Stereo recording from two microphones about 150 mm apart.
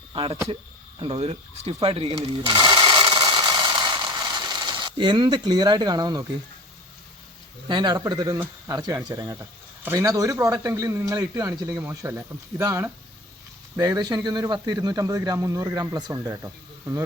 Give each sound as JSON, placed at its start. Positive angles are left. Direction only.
{"t": 0.1, "sound": "speech", "side_deg": -35}
{"t": 0.9, "sound": "a sound", "side_deg": -35}
{"t": 7.7, "sound": "speech", "side_deg": -30}